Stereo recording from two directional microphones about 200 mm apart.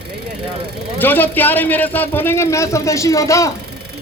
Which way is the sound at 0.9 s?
10° left (ahead or behind).